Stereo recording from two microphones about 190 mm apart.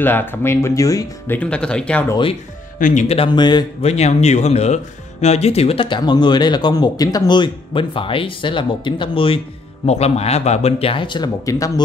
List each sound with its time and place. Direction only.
0.0 s speech: 10° left (ahead or behind)
2.8 s speech: 40° left (ahead or behind); by 3.9 s 25° left (ahead or behind)
3.9 s speech: 35° left (ahead or behind); by 11.8 s 15° left (ahead or behind)